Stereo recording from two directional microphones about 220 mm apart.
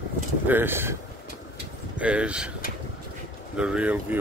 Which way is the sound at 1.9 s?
5° right (ahead or behind).